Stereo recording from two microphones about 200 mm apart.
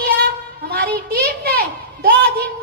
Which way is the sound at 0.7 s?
50° right (ahead or behind).